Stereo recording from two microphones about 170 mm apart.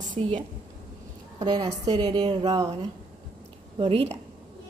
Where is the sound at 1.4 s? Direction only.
25° right (ahead or behind).